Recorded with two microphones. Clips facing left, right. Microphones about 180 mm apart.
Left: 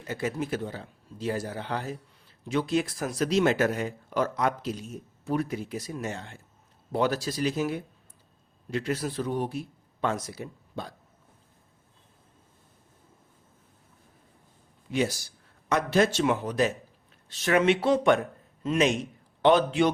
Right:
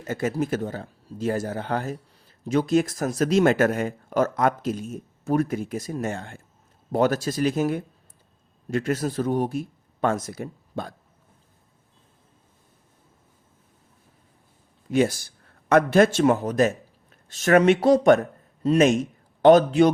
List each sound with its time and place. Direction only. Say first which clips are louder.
0.0 s speech: right 5 dB; 45° right (ahead or behind)
14.8 s a man's voice: right 6 dB; 50° right (ahead or behind)